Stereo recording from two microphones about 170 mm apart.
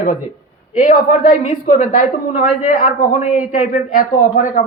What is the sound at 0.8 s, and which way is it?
A woman's voice, 50° left (ahead or behind).